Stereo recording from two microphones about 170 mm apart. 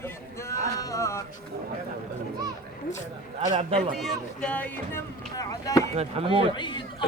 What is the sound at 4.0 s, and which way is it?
Speech, 5° left (ahead or behind).